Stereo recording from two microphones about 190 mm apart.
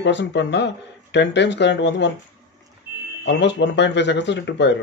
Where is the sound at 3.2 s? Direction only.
65° left (ahead or behind).